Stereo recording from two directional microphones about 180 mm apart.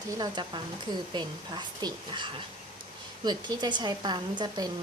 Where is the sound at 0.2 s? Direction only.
25° right (ahead or behind).